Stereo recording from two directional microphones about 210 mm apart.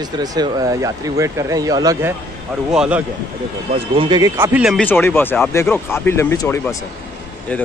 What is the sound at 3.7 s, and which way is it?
Speech, 25° right (ahead or behind).